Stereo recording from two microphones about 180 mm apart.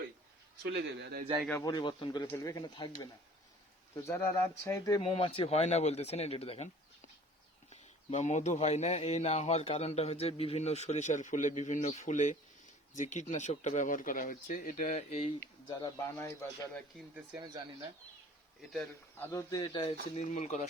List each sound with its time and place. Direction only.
0.6 s speech: 70° right (ahead or behind)
1.6 s speech: 25° left (ahead or behind)
4.9 s speech: 35° left (ahead or behind)
15.4 s speech: 15° left (ahead or behind)
18.7 s speech: 5° left (ahead or behind)
19.3 s speech: 20° left (ahead or behind)
20.1 s speech: 40° left (ahead or behind)